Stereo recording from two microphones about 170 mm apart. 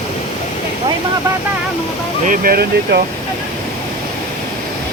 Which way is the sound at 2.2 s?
55° right (ahead or behind).